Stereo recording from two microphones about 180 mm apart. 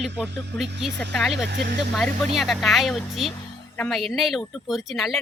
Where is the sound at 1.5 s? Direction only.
70° right (ahead or behind).